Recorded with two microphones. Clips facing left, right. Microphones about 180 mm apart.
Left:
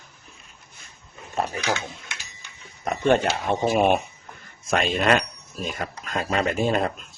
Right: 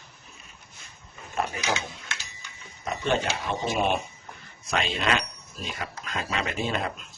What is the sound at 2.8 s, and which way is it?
Speech, 55° left (ahead or behind).